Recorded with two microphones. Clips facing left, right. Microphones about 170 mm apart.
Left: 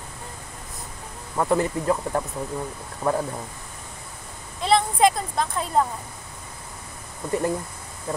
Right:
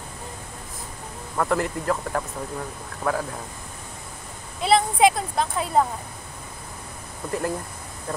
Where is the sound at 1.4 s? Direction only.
20° left (ahead or behind).